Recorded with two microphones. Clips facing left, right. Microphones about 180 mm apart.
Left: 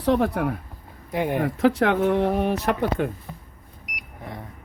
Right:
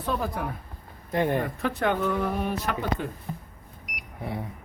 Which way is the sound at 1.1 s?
10° left (ahead or behind).